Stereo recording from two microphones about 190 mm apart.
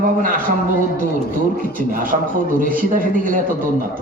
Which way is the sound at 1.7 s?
45° right (ahead or behind).